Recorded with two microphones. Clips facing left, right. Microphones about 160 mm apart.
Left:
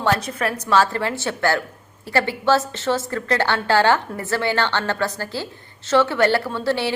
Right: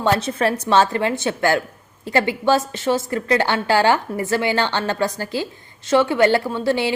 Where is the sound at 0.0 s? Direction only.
25° right (ahead or behind).